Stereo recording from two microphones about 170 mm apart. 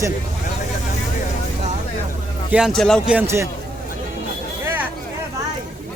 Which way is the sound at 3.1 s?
15° right (ahead or behind).